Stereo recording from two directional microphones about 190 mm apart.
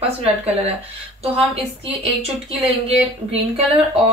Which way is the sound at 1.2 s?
30° right (ahead or behind).